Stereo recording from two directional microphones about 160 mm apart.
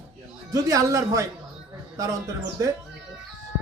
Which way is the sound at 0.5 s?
20° right (ahead or behind).